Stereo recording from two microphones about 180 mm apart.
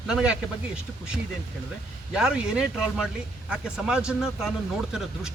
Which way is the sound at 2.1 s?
5° right (ahead or behind).